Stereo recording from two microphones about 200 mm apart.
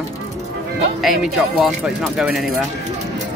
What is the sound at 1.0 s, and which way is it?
Speech, centre (ahead or behind).